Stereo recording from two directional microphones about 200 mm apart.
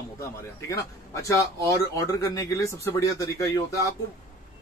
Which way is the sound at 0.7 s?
15° left (ahead or behind).